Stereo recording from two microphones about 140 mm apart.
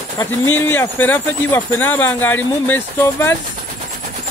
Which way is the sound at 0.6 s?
15° left (ahead or behind).